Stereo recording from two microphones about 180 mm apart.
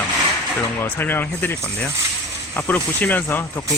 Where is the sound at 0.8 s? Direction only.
10° left (ahead or behind).